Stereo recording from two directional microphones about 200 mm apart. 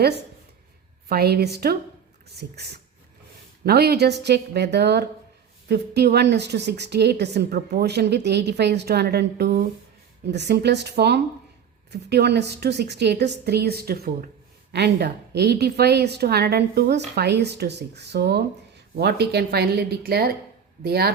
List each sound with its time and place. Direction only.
1.0 s a woman's voice: 50° right (ahead or behind)